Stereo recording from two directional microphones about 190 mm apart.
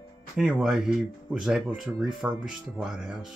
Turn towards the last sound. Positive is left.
turn(degrees=0)  # may be behind; listen again after turning